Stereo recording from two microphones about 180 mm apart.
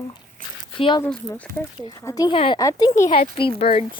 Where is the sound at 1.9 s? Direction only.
20° left (ahead or behind).